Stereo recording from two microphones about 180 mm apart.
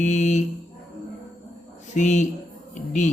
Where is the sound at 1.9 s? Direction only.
40° left (ahead or behind).